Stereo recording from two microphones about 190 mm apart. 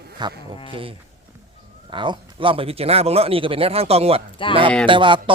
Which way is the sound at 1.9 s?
25° right (ahead or behind).